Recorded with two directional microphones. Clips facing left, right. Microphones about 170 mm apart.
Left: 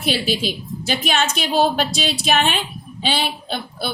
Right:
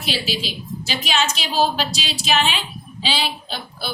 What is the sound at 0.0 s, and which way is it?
A woman's voice, 50° left (ahead or behind).